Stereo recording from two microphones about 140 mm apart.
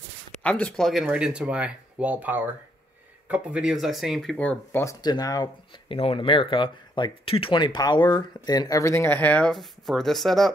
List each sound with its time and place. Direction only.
0.4 s speech: 10° left (ahead or behind)
4.8 s speech: 25° left (ahead or behind)
5.9 s speech: 40° left (ahead or behind); by 10.5 s centre (ahead or behind)